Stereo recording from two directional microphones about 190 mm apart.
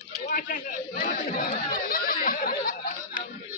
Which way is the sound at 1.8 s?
50° left (ahead or behind).